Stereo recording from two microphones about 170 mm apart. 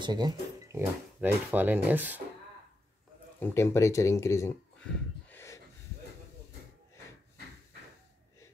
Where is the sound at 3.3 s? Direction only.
15° left (ahead or behind).